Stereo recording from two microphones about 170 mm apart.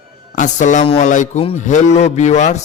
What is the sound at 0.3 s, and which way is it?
A man's voice, 45° left (ahead or behind).